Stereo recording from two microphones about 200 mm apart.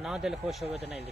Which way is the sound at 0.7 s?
30° right (ahead or behind).